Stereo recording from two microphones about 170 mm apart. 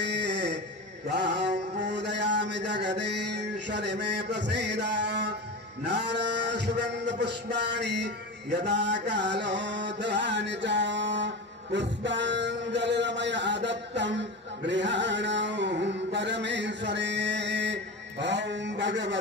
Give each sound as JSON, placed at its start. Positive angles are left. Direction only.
{"t": 0.0, "sound": "music", "side_deg": -90}
{"t": 1.1, "sound": "mantra", "side_deg": -90}
{"t": 5.9, "sound": "a sound", "side_deg": -90}